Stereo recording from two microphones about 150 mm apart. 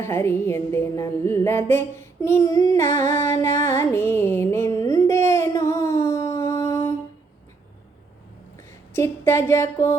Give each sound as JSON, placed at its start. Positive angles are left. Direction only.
{"t": 0.0, "sound": "music", "side_deg": 15}
{"t": 8.9, "sound": "a woman's voice", "side_deg": 15}